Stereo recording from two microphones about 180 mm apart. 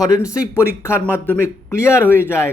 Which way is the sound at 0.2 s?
5° right (ahead or behind).